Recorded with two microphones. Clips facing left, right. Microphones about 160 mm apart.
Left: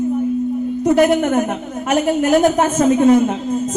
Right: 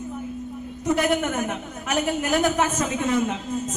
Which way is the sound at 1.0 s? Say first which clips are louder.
Left 10 dB; 50° left (ahead or behind).